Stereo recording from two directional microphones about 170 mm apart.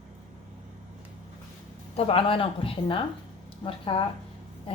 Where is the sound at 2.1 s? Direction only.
35° left (ahead or behind).